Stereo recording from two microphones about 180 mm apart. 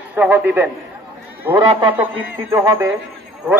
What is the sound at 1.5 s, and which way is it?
Speech, 30° right (ahead or behind).